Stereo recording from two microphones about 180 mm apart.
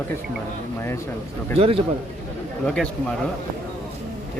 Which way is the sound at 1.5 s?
30° right (ahead or behind).